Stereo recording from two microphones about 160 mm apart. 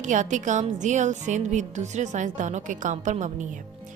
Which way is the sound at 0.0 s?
50° right (ahead or behind).